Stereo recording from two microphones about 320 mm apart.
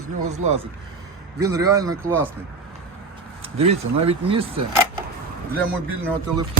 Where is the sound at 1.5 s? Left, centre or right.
Centre.